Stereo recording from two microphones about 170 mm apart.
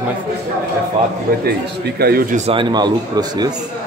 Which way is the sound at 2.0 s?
60° right (ahead or behind).